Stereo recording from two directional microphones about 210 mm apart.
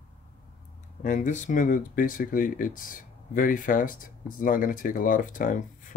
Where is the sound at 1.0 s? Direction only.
35° left (ahead or behind).